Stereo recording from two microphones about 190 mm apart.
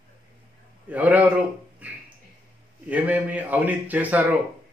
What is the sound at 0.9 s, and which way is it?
A man's voice, 10° right (ahead or behind).